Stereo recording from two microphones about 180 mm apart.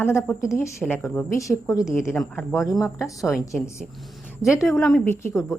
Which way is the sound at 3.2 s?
Centre (ahead or behind).